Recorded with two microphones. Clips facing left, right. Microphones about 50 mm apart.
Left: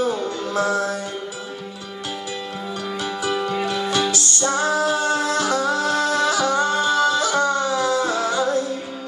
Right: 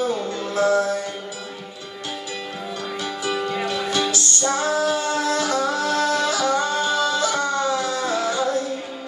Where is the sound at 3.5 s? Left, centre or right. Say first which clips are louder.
Left 2 dB; left.